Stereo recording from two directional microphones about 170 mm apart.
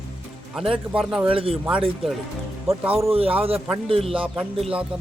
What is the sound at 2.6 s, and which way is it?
Speech, 10° right (ahead or behind).